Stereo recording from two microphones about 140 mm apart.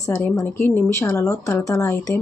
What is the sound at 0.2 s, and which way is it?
Speech, 15° left (ahead or behind).